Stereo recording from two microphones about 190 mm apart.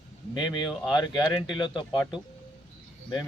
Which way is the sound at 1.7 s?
25° left (ahead or behind).